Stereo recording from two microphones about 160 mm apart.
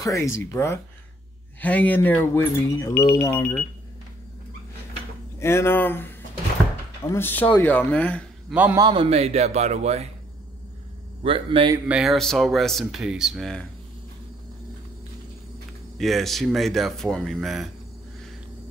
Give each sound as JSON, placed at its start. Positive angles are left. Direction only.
{"t": 0.0, "sound": "speech", "side_deg": 20}
{"t": 5.4, "sound": "speech", "side_deg": 15}
{"t": 8.5, "sound": "a man's voice", "side_deg": -10}
{"t": 8.7, "sound": "speech", "side_deg": -30}
{"t": 11.2, "sound": "speech", "side_deg": -35}
{"t": 11.9, "sound": "speech", "side_deg": 0}
{"t": 16.0, "sound": "speech", "side_deg": 0}